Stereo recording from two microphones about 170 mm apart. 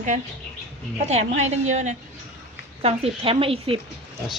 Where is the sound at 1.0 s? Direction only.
40° right (ahead or behind).